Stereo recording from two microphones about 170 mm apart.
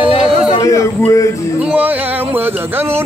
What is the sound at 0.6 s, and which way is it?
Speech, 20° left (ahead or behind).